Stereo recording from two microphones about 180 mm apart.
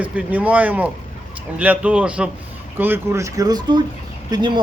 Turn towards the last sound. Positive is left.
turn(degrees=-25)  # may be behind; listen again after turning